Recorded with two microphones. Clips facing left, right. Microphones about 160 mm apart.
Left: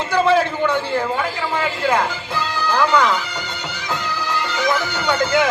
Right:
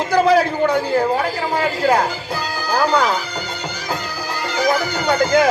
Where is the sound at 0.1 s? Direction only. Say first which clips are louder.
Right 2 dB; 40° right (ahead or behind).